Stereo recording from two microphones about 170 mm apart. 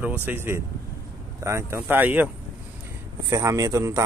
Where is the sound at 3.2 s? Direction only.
20° right (ahead or behind).